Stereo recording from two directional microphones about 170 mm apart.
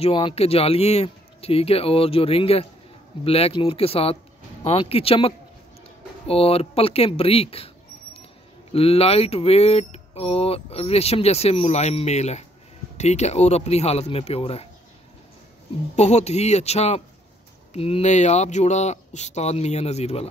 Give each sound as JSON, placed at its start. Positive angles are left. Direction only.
{"t": 0.0, "sound": "speech", "side_deg": 35}
{"t": 16.0, "sound": "speech", "side_deg": 40}